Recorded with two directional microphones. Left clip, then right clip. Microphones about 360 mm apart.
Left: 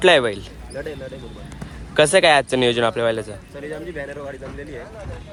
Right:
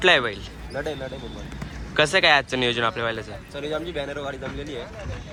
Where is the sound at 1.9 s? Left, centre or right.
Centre.